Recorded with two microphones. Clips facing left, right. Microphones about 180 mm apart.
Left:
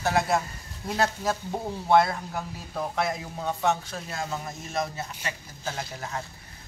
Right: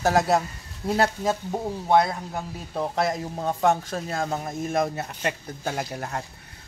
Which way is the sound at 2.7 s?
35° right (ahead or behind).